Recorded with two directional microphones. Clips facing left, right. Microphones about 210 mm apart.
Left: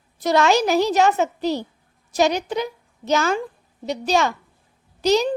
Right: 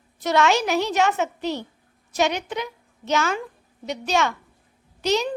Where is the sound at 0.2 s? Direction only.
35° left (ahead or behind).